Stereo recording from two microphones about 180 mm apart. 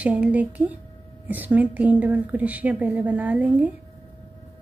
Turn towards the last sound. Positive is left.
turn(degrees=-10)  # may be behind; listen again after turning